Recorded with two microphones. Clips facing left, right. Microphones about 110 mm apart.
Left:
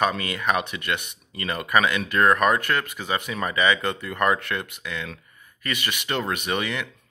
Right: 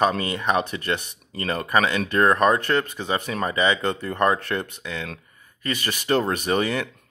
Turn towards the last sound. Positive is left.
turn(degrees=-35)  # may be behind; listen again after turning